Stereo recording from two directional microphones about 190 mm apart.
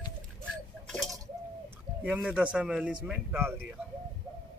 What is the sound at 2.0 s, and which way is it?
Speech, 5° right (ahead or behind).